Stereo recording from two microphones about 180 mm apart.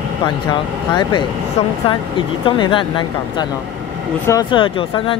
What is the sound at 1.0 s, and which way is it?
Speech, 25° left (ahead or behind).